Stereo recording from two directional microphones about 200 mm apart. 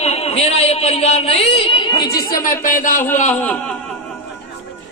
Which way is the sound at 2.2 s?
45° left (ahead or behind).